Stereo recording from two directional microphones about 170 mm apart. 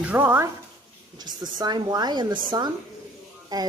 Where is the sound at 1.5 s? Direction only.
25° right (ahead or behind).